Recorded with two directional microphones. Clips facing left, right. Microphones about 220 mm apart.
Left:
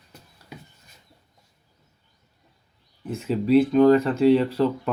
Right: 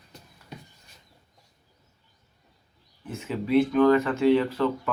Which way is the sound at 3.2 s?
30° left (ahead or behind).